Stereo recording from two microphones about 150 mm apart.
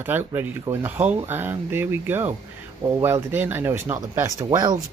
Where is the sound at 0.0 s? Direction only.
15° right (ahead or behind).